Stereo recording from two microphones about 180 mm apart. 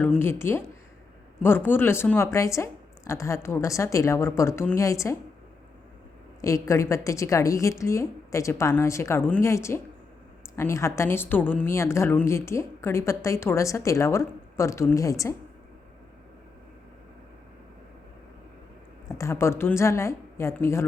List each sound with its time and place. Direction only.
0.0 s a woman's voice: 10° left (ahead or behind)
6.4 s a woman's voice: 15° left (ahead or behind)
19.0 s a woman's voice: 15° left (ahead or behind)